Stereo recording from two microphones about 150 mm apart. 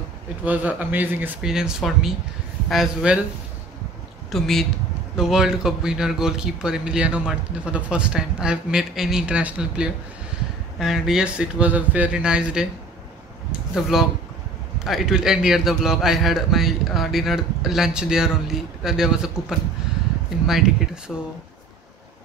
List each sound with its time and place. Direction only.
0.5 s a man's voice: 10° right (ahead or behind)
4.3 s a man's voice: centre (ahead or behind)
20.4 s a man's voice: centre (ahead or behind)